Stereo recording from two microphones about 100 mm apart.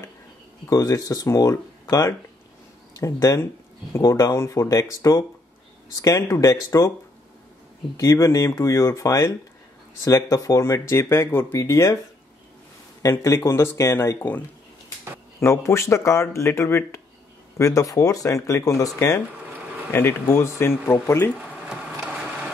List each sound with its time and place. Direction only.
0.7 s speech: 35° left (ahead or behind)
8.0 s speech: 30° left (ahead or behind)
13.0 s speech: 30° left (ahead or behind)
15.4 s speech: 30° left (ahead or behind)
21.4 s a sound: 10° right (ahead or behind)